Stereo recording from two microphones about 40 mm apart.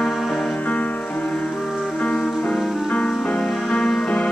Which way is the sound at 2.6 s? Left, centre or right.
Centre.